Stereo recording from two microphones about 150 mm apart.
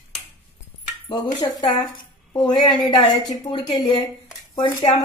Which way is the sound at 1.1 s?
25° left (ahead or behind).